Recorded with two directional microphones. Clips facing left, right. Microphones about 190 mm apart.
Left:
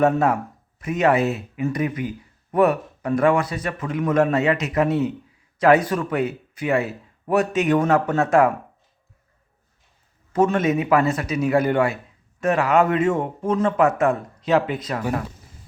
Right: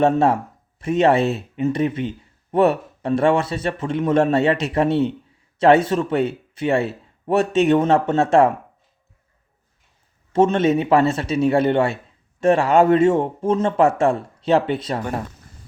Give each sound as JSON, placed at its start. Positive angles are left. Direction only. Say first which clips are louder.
{"t": 0.0, "sound": "speech", "louder": "right 2 dB", "side_deg": -25}
{"t": 10.3, "sound": "speech", "louder": "right 3 dB", "side_deg": -25}